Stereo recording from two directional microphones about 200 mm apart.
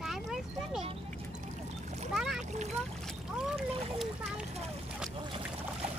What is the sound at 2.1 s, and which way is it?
Speech, centre (ahead or behind).